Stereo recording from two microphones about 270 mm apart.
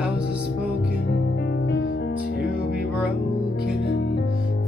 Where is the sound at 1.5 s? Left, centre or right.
Left.